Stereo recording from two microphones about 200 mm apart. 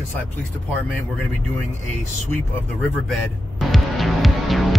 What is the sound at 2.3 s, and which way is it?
Speech, 10° left (ahead or behind).